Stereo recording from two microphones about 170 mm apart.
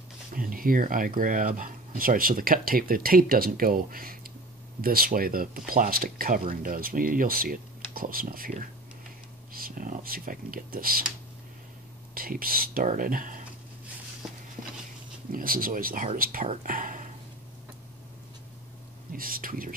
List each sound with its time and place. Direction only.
0.3 s speech: 55° right (ahead or behind)
12.1 s speech: 60° right (ahead or behind)
15.3 s speech: 55° right (ahead or behind)
19.1 s speech: 55° right (ahead or behind)